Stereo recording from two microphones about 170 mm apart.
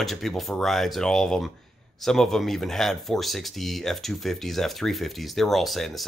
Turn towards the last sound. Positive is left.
turn(degrees=0)  # may be behind; listen again after turning